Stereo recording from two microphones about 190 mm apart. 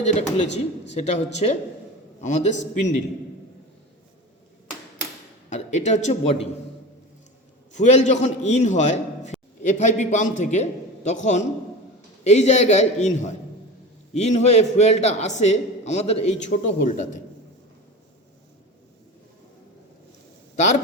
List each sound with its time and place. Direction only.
0.0 s a man's voice: 35° left (ahead or behind)
5.5 s a man's voice: 35° left (ahead or behind)
7.7 s a man's voice: 40° left (ahead or behind)